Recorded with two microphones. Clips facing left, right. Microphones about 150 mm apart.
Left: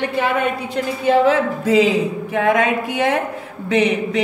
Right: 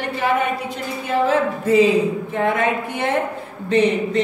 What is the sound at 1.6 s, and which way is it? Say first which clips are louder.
Speech: even; 90° left.